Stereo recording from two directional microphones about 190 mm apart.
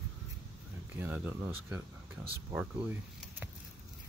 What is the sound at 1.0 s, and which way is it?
Speech, 10° right (ahead or behind).